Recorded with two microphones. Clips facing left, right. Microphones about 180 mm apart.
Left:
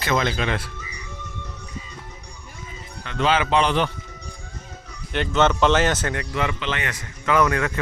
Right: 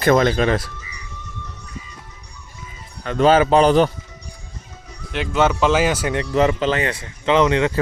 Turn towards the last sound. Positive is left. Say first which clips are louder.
# right 4 dB
turn(degrees=-25)  # may be behind; listen again after turning